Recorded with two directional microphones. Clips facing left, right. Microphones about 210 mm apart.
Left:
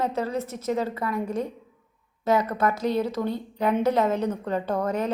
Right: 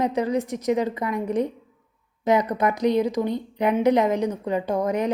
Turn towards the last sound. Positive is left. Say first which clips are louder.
# right 3 dB
turn(degrees=-15)  # may be behind; listen again after turning